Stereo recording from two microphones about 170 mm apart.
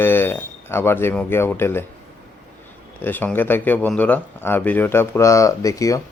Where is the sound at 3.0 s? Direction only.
10° left (ahead or behind).